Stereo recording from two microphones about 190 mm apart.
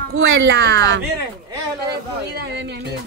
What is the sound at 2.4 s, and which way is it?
Speech, 60° right (ahead or behind).